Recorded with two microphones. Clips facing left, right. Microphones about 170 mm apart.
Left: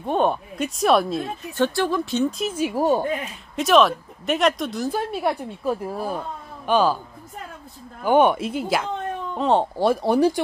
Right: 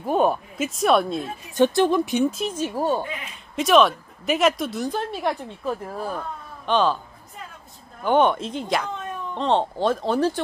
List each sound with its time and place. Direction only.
0.0 s speech: 5° right (ahead or behind)
1.6 s speech: 15° right (ahead or behind)
2.3 s a woman's voice: 5° left (ahead or behind)
3.0 s speech: 45° left (ahead or behind)
3.5 s a woman's voice: centre (ahead or behind)
8.0 s a woman's voice: 10° left (ahead or behind)